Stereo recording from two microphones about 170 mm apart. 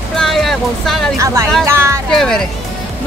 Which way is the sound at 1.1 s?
15° right (ahead or behind).